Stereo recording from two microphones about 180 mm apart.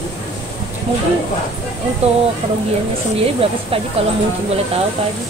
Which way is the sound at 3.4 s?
30° right (ahead or behind).